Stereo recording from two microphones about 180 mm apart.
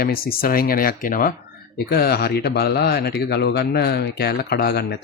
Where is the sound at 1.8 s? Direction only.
60° left (ahead or behind).